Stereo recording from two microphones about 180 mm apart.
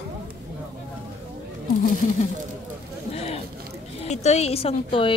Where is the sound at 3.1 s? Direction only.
35° left (ahead or behind).